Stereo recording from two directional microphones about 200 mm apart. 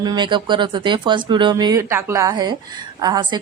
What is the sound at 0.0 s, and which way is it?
Speech, 20° right (ahead or behind).